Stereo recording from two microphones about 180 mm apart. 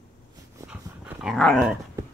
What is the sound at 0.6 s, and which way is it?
Dog, 5° right (ahead or behind).